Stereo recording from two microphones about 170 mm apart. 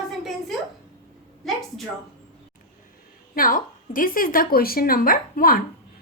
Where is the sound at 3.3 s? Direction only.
55° left (ahead or behind).